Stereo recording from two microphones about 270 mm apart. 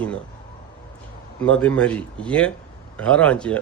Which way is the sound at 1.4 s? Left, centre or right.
Centre.